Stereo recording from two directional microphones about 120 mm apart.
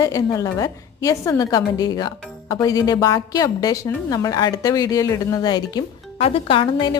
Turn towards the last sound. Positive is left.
turn(degrees=40)  # may be behind; listen again after turning